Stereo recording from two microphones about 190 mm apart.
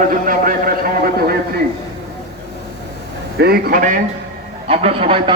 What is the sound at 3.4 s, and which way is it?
Speech, 55° right (ahead or behind).